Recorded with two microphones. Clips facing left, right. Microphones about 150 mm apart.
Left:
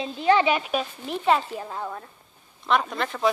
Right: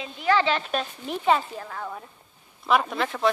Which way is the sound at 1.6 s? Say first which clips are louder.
Left 3 dB; 20° left (ahead or behind).